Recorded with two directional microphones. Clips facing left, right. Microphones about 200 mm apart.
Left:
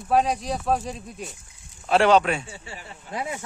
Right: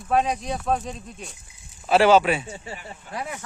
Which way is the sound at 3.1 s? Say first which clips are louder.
Left 2 dB; 15° left (ahead or behind).